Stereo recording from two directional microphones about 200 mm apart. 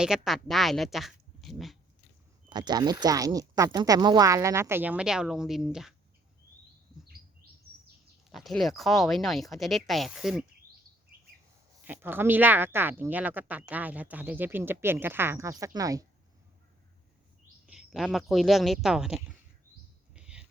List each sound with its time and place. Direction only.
0.0 s speech: centre (ahead or behind)
1.4 s dog: centre (ahead or behind)
2.5 s a woman's voice: 20° right (ahead or behind); by 5.9 s centre (ahead or behind)
8.3 s speech: centre (ahead or behind)
11.8 s a woman's voice: 10° right (ahead or behind)
17.7 s speech: 5° right (ahead or behind)
20.1 s whispering: 5° right (ahead or behind)